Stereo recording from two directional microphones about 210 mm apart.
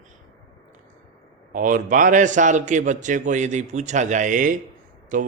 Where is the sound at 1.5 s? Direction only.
40° right (ahead or behind).